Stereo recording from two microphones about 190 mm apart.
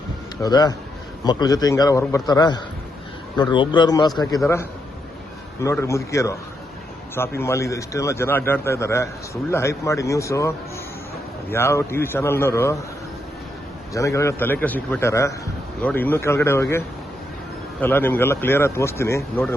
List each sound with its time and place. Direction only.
0.4 s a man's voice: 20° left (ahead or behind)
5.6 s a man's voice: 15° left (ahead or behind)
11.5 s a man's voice: 15° left (ahead or behind)
13.9 s a man's voice: 15° left (ahead or behind)